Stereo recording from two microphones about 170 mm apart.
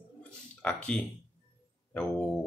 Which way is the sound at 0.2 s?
5° left (ahead or behind).